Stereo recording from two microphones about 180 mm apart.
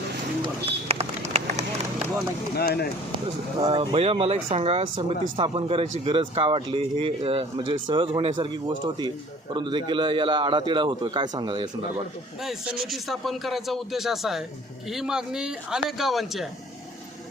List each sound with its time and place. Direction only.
0.4 s run: 35° right (ahead or behind)
2.6 s speech: 60° left (ahead or behind)
3.6 s a man's voice: 30° right (ahead or behind)
12.4 s speech: 5° right (ahead or behind)